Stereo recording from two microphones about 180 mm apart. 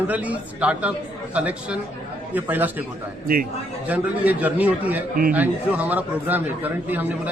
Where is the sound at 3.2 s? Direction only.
55° right (ahead or behind).